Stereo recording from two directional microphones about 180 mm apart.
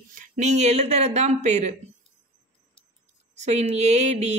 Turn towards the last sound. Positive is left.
turn(degrees=-35)  # may be behind; listen again after turning